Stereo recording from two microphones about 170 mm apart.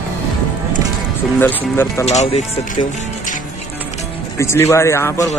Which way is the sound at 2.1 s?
40° left (ahead or behind).